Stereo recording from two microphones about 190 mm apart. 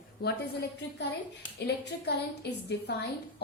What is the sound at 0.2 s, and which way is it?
A woman's voice, 60° left (ahead or behind).